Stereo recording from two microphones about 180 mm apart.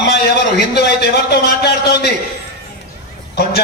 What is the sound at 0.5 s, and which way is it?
A man's voice, 65° left (ahead or behind).